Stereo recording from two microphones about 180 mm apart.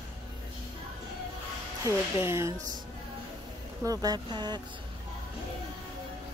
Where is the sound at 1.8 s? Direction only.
15° right (ahead or behind).